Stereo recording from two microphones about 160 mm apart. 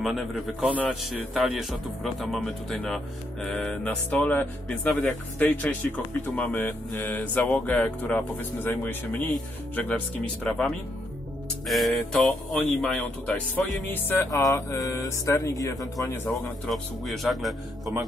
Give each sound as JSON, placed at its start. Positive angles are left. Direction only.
{"t": 0.0, "sound": "a man's voice", "side_deg": 0}
{"t": 16.3, "sound": "speech", "side_deg": 0}